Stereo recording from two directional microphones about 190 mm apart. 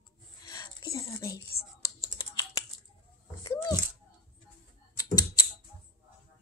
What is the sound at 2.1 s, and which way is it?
Computer keyboard, 15° left (ahead or behind).